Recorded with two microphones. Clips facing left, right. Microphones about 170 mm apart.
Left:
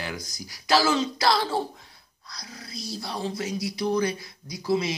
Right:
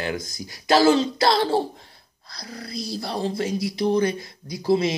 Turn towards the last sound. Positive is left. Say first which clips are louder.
# right 5 dB
turn(degrees=-25)  # may be behind; listen again after turning